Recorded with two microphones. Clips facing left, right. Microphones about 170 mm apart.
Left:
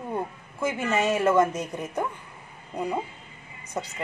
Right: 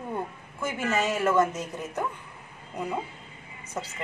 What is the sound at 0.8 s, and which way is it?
Speech, 25° left (ahead or behind).